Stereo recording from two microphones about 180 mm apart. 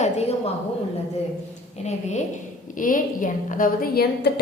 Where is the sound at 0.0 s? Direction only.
35° left (ahead or behind).